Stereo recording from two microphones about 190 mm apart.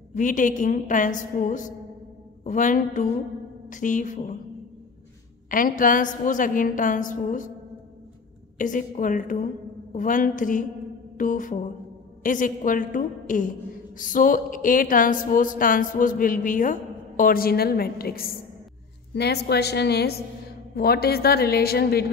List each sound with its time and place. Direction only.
0.1 s a woman's voice: 40° left (ahead or behind)
5.5 s a woman's voice: 45° left (ahead or behind)
8.5 s a woman's voice: 45° left (ahead or behind)